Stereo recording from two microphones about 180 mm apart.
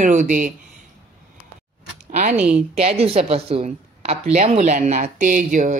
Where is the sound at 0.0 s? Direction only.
45° right (ahead or behind).